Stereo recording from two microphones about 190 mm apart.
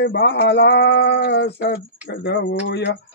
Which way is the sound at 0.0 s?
65° left (ahead or behind).